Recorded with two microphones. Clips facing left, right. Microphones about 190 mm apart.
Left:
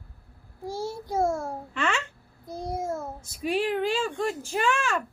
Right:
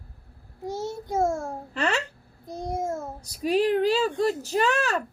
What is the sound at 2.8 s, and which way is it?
A woman's voice, 45° right (ahead or behind).